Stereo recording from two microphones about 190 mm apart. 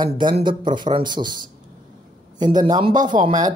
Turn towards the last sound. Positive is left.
turn(degrees=-20)  # may be behind; listen again after turning